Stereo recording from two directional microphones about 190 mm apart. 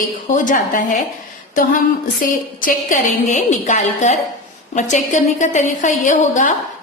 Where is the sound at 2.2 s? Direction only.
45° left (ahead or behind).